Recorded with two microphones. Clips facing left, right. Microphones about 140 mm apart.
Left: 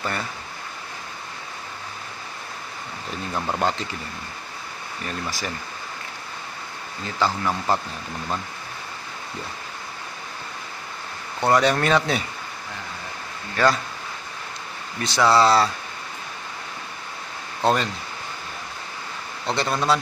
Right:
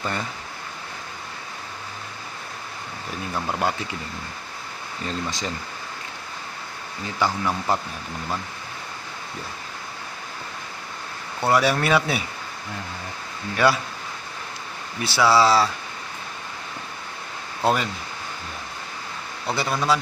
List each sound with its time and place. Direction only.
0.0 s speech: 20° right (ahead or behind)
3.3 s speech: 5° left (ahead or behind)
3.6 s speech: 15° right (ahead or behind)
5.0 s speech: 20° right (ahead or behind)
7.0 s speech: 15° right (ahead or behind)
7.4 s speech: 15° left (ahead or behind)
11.4 s speech: 5° right (ahead or behind)
13.6 s speech: 15° right (ahead or behind)
15.0 s speech: 5° right (ahead or behind)
17.6 s speech: 5° right (ahead or behind)
19.4 s speech: 5° right (ahead or behind)